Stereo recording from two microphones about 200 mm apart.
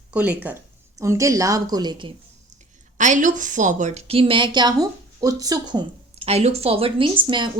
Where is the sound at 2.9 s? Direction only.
40° right (ahead or behind).